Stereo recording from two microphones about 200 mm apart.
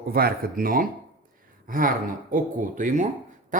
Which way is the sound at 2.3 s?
40° right (ahead or behind).